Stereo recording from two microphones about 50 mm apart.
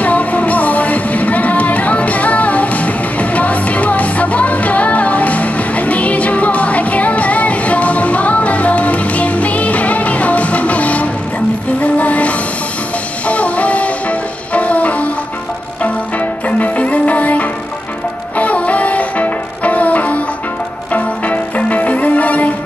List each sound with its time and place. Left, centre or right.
0.0 s music: left